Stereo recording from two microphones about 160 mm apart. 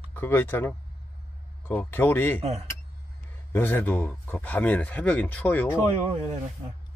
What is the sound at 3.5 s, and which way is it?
Speech, 10° left (ahead or behind).